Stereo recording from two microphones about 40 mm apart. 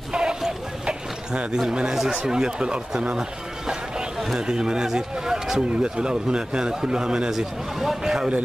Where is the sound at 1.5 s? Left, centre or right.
Centre.